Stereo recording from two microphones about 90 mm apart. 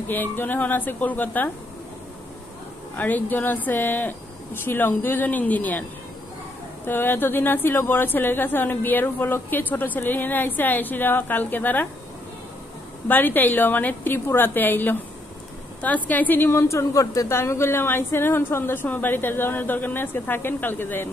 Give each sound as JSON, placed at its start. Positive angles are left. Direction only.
{"t": 0.1, "sound": "a woman's voice", "side_deg": 20}
{"t": 3.0, "sound": "a woman's voice", "side_deg": 20}
{"t": 6.9, "sound": "a woman's voice", "side_deg": 25}
{"t": 13.1, "sound": "a woman's voice", "side_deg": 20}